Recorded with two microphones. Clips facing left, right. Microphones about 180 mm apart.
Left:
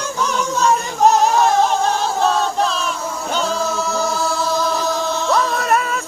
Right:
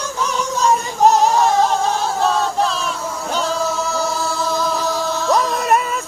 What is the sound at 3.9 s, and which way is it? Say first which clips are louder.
Music: left 1 dB; centre (ahead or behind).